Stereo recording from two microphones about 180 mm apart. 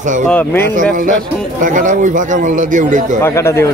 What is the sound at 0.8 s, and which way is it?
Speech, 45° right (ahead or behind).